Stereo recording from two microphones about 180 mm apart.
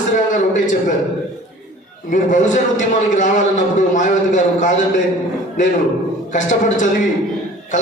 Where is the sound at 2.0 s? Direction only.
45° left (ahead or behind).